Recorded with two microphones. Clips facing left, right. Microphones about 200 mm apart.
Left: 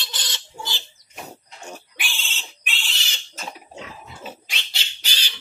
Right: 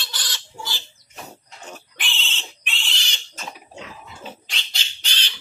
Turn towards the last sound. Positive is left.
turn(degrees=10)  # may be behind; listen again after turning